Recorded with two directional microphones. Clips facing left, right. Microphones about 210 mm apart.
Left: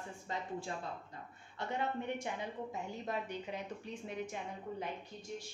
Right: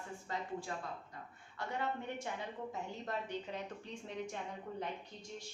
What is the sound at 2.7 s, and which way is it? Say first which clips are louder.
A woman's voice: left 2 dB; 10° left (ahead or behind).